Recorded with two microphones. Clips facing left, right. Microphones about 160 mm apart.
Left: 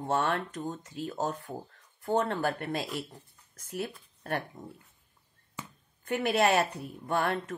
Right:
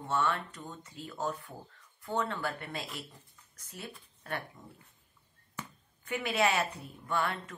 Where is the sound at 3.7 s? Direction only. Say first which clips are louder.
Left 10 dB; 65° left (ahead or behind).